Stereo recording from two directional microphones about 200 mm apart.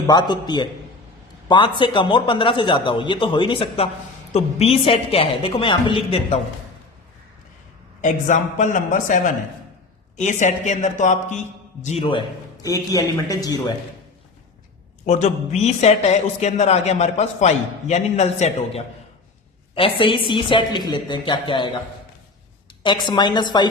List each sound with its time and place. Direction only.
0.1 s a man's voice: 20° left (ahead or behind)
8.0 s a man's voice: 40° left (ahead or behind)
12.6 s a man's voice: 15° left (ahead or behind)
15.0 s a man's voice: 35° left (ahead or behind)
22.8 s a man's voice: 20° left (ahead or behind)